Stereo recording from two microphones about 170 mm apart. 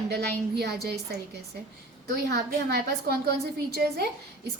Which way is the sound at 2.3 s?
70° right (ahead or behind).